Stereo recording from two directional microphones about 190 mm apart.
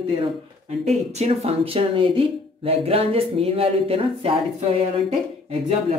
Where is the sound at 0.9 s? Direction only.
35° right (ahead or behind).